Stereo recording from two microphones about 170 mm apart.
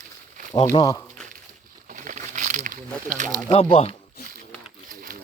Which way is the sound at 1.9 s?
50° right (ahead or behind).